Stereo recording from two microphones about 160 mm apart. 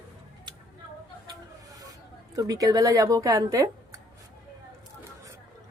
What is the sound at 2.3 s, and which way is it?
A woman's voice, 20° right (ahead or behind).